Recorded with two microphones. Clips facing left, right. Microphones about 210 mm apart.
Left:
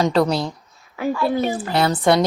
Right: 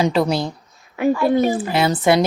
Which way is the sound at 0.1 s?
5° right (ahead or behind).